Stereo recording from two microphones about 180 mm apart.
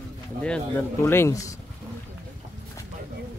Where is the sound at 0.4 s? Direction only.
10° left (ahead or behind).